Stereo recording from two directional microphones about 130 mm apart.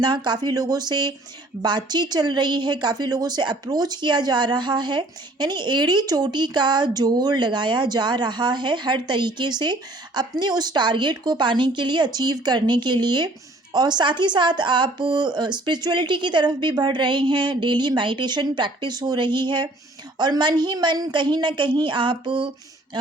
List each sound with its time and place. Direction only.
0.0 s speech: 35° right (ahead or behind)